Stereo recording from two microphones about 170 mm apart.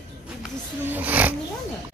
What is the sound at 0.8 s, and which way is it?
Speech, 10° right (ahead or behind).